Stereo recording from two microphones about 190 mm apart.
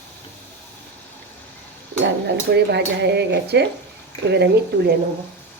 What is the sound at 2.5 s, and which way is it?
Speech, 60° right (ahead or behind).